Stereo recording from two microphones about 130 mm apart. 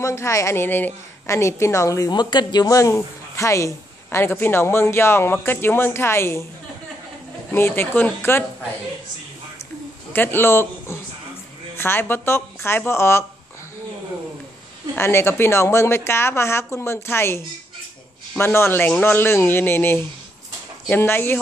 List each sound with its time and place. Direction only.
0.0 s a woman's voice: 20° left (ahead or behind)
7.5 s speech: 20° left (ahead or behind)
10.1 s a woman's voice: 15° left (ahead or behind)
15.0 s a woman's voice: 20° left (ahead or behind)